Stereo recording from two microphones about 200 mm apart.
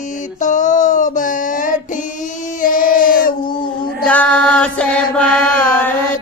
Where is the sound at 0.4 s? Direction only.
40° left (ahead or behind).